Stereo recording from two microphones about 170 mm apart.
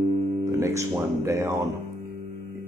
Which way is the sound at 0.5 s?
15° right (ahead or behind).